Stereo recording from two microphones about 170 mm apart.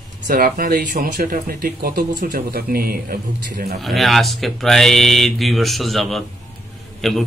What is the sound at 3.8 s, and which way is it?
A man's voice, centre (ahead or behind).